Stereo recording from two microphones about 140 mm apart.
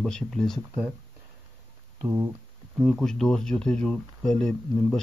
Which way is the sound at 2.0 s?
20° right (ahead or behind).